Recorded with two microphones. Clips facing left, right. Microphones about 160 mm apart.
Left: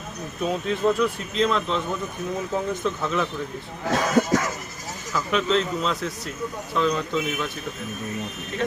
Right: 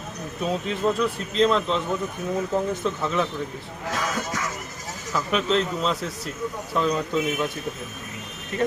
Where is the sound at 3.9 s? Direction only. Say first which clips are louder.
Left 8 dB; 60° left (ahead or behind).